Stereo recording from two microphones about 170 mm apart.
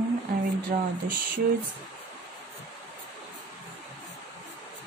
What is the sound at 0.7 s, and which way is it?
Speech, 55° right (ahead or behind).